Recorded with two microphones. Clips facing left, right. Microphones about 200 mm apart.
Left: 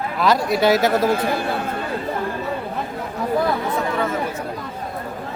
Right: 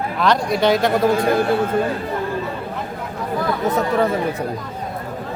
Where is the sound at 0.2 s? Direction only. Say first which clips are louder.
Even; 5° left (ahead or behind).